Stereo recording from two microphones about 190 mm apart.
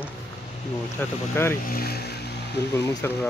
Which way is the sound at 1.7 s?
55° left (ahead or behind).